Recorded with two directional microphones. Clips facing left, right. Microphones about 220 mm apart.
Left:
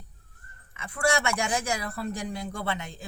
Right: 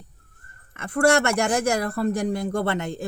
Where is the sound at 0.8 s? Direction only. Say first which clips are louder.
Right 8 dB; 65° right (ahead or behind); by 2.5 s 50° right (ahead or behind).